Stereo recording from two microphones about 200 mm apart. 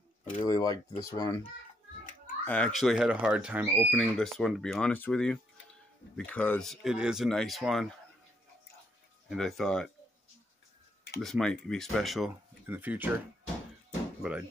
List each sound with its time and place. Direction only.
0.2 s a sound: 40° left (ahead or behind)
0.5 s a child's voice: 20° left (ahead or behind)
2.4 s speech: 5° left (ahead or behind)
9.3 s speech: centre (ahead or behind)
11.1 s speech: centre (ahead or behind)